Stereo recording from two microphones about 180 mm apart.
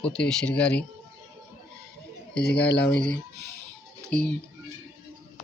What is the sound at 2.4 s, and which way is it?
Speech, 70° left (ahead or behind).